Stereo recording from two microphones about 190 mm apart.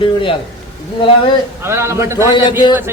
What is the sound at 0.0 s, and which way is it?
Speech, 25° left (ahead or behind).